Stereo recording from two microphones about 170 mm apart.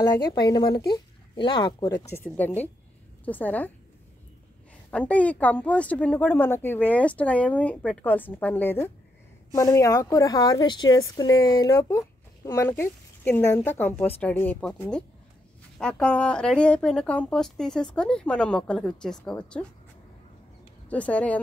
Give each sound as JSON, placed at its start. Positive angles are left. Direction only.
{"t": 0.0, "sound": "speech", "side_deg": 25}
{"t": 2.2, "sound": "speech", "side_deg": 10}
{"t": 4.9, "sound": "speech", "side_deg": 10}
{"t": 15.8, "sound": "speech", "side_deg": 5}
{"t": 20.9, "sound": "speech", "side_deg": 10}